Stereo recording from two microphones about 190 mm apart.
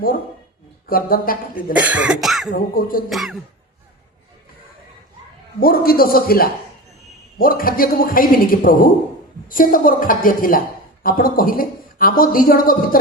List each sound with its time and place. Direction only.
0.9 s speech: 50° left (ahead or behind)
1.8 s cough: 5° right (ahead or behind)
2.5 s speech: 50° left (ahead or behind)
3.1 s cough: centre (ahead or behind)
5.5 s speech: 50° left (ahead or behind)